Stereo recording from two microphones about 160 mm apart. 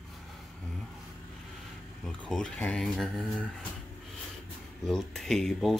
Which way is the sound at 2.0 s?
5° left (ahead or behind).